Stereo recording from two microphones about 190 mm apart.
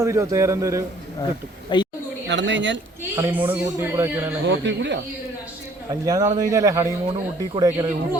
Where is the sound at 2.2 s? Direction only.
70° right (ahead or behind).